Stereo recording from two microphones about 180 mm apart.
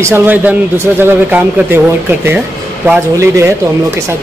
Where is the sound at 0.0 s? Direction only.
10° right (ahead or behind).